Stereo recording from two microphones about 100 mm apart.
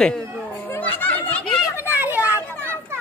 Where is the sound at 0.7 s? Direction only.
20° left (ahead or behind).